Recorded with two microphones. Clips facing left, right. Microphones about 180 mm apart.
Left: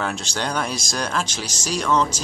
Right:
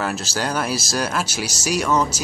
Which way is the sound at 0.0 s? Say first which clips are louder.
Right 2 dB; 5° right (ahead or behind).